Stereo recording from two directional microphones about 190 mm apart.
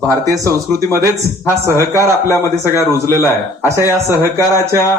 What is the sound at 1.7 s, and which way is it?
Speech, 15° right (ahead or behind).